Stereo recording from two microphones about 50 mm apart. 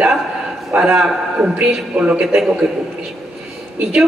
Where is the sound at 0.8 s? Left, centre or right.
Centre.